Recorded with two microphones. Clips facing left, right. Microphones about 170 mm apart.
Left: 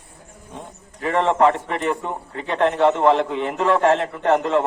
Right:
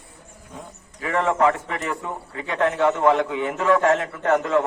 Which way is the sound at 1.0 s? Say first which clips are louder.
Left 3 dB; 30° left (ahead or behind).